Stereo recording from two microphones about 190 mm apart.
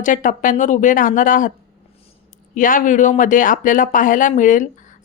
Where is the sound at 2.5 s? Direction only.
45° left (ahead or behind).